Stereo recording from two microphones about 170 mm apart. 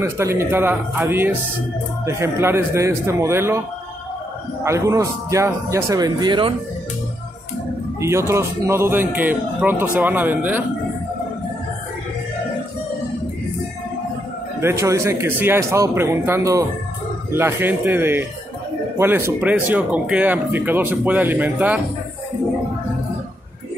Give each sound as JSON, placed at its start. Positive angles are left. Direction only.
{"t": 0.0, "sound": "speech", "side_deg": -15}
{"t": 4.6, "sound": "a man's voice", "side_deg": -20}
{"t": 8.0, "sound": "speech", "side_deg": -15}
{"t": 14.6, "sound": "speech", "side_deg": -15}